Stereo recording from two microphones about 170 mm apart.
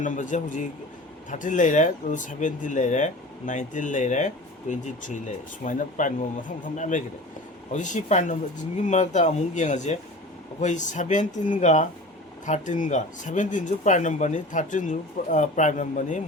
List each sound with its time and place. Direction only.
0.0 s speech: 50° left (ahead or behind)